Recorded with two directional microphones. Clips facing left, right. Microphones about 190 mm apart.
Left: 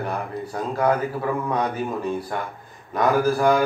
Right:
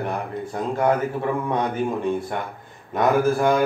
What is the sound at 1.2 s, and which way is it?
Speech, 25° right (ahead or behind).